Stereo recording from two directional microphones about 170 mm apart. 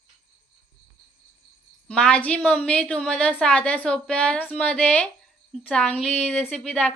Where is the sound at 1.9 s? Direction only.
5° left (ahead or behind).